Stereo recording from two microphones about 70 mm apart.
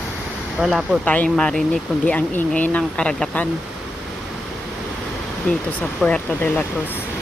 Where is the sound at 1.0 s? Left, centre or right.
Left.